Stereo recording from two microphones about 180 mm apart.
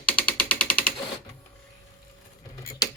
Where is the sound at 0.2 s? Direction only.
10° left (ahead or behind).